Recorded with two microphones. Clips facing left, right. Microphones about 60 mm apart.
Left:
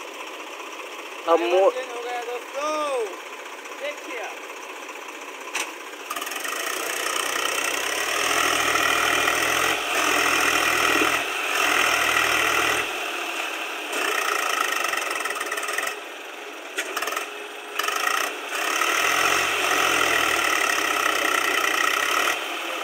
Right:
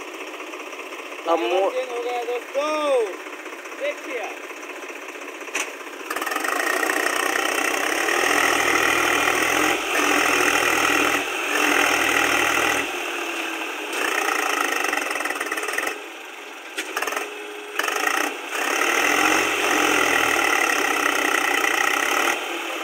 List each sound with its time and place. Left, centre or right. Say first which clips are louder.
1.2 s speech: left 2 dB; centre
6.1 s vehicle: right 7 dB; right
16.9 s wood: right 3 dB; right
17.7 s vehicle: right 2 dB; right